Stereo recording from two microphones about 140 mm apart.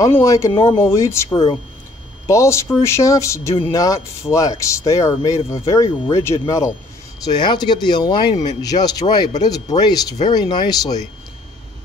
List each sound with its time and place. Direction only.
0.0 s speech: 20° left (ahead or behind)
0.5 s speech: 30° left (ahead or behind)
0.7 s speech: 20° left (ahead or behind)